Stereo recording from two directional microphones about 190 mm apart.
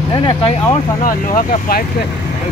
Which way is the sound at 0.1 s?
25° left (ahead or behind).